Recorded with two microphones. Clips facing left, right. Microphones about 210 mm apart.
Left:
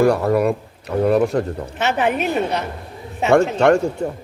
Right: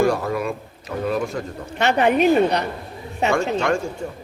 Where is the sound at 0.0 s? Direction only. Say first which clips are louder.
Left 5 dB; 60° left (ahead or behind).